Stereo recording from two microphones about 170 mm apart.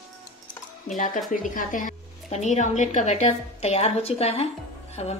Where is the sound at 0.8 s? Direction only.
50° left (ahead or behind).